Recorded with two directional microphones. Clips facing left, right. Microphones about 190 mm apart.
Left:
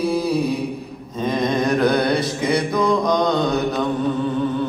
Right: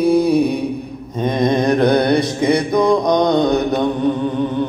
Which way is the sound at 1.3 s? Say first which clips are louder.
Right 4 dB; 20° right (ahead or behind).